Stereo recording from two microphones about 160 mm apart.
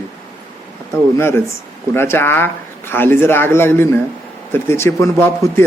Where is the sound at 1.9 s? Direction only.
15° left (ahead or behind).